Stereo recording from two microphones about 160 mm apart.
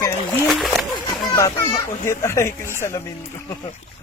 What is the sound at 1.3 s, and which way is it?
Speech, 25° left (ahead or behind).